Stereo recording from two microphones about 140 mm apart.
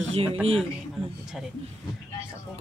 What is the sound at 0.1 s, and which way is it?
Speech, 45° right (ahead or behind).